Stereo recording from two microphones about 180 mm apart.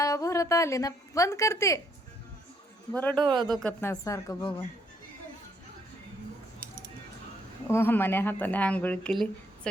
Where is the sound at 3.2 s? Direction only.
25° right (ahead or behind).